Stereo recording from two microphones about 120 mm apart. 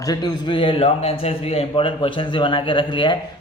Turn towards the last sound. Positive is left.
turn(degrees=45)  # may be behind; listen again after turning